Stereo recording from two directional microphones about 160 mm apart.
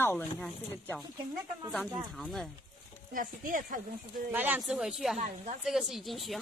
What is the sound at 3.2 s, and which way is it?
Speech, 60° right (ahead or behind).